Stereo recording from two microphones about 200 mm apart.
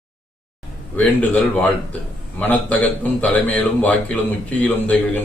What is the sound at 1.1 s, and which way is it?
A man's voice, 5° left (ahead or behind).